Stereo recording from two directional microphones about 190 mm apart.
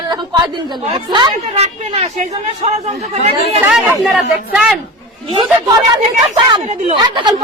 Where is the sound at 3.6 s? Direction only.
Centre (ahead or behind).